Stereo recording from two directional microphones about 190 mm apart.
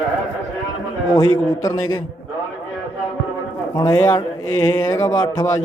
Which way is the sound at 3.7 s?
15° left (ahead or behind).